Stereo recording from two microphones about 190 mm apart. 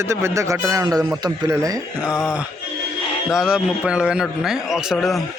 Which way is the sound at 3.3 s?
5° right (ahead or behind).